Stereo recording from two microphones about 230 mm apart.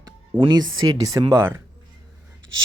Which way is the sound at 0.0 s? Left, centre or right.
Centre.